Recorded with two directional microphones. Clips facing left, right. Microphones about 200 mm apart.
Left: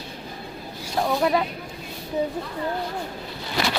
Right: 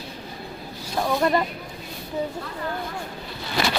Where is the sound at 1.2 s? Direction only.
Centre (ahead or behind).